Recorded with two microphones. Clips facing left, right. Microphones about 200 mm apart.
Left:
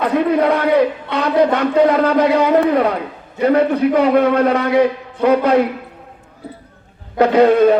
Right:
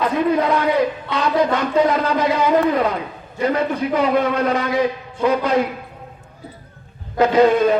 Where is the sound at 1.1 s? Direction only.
60° left (ahead or behind).